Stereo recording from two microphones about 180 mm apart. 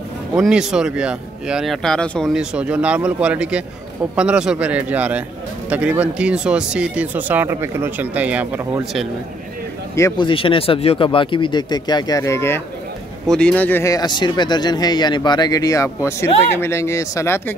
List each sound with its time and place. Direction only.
0.4 s speech: 5° right (ahead or behind)
9.9 s speech: 15° left (ahead or behind)
10.2 s speech: 30° left (ahead or behind)